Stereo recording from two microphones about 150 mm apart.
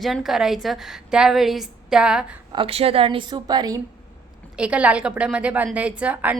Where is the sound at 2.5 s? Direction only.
40° right (ahead or behind).